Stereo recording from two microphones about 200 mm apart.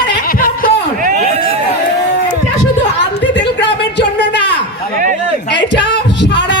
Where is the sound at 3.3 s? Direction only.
60° left (ahead or behind).